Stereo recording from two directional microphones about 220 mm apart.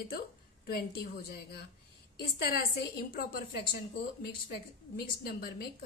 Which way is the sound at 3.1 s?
45° left (ahead or behind).